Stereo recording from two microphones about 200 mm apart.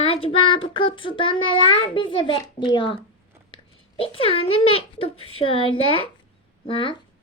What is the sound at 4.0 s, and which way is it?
Child singing, 30° left (ahead or behind).